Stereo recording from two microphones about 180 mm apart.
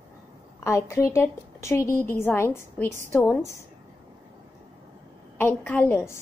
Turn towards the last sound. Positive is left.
turn(degrees=15)  # may be behind; listen again after turning